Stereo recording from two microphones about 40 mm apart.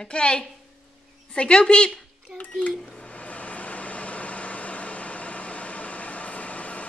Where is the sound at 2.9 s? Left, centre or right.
Left.